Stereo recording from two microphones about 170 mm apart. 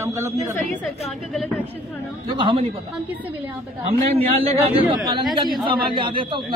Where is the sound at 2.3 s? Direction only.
30° right (ahead or behind).